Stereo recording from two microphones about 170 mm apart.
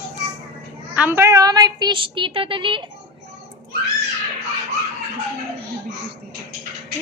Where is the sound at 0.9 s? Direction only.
10° right (ahead or behind); by 2.9 s 30° right (ahead or behind).